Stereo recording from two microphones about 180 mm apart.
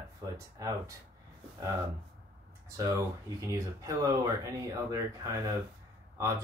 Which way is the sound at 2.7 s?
15° right (ahead or behind).